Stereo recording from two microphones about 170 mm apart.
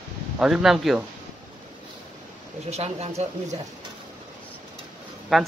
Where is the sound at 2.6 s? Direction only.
40° right (ahead or behind).